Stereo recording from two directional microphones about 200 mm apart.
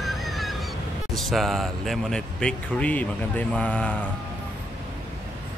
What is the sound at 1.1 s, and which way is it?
Speech, centre (ahead or behind).